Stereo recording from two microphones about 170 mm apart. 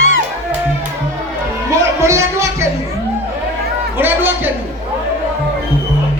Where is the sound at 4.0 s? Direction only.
10° right (ahead or behind).